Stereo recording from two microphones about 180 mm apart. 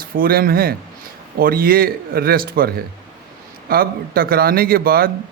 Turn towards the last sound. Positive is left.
turn(degrees=-55)  # may be behind; listen again after turning